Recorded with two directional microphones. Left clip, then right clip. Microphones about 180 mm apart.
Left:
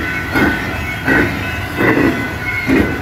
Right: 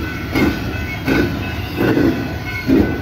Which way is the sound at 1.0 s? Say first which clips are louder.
Left 4 dB; 35° right (ahead or behind).